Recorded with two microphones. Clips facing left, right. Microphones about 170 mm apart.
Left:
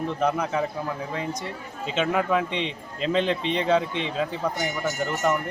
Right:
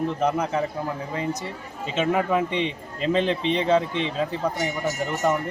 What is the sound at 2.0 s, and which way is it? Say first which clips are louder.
A man's voice: right 1 dB; 5° right (ahead or behind).